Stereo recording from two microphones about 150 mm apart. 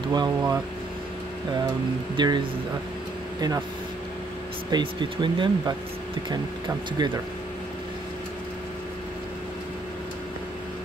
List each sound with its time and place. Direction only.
0.1 s speech: 25° right (ahead or behind)
2.1 s speech: 30° right (ahead or behind)
4.6 s speech: 30° right (ahead or behind)
7.0 s speech: 30° right (ahead or behind)